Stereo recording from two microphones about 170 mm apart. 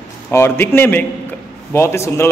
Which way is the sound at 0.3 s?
15° left (ahead or behind).